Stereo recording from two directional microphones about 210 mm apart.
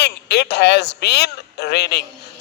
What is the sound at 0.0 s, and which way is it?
A man's voice, 50° left (ahead or behind).